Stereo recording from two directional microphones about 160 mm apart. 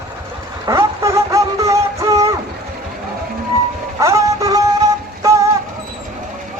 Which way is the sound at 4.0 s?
20° right (ahead or behind).